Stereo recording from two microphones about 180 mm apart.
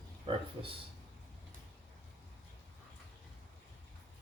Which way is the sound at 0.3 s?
30° right (ahead or behind).